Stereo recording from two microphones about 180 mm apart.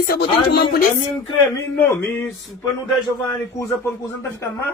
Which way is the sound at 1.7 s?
10° left (ahead or behind).